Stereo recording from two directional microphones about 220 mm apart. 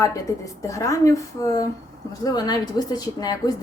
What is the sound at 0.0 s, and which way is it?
Speech, 15° left (ahead or behind).